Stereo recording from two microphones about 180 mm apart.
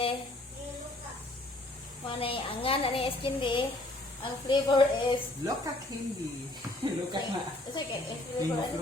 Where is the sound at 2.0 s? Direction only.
30° left (ahead or behind).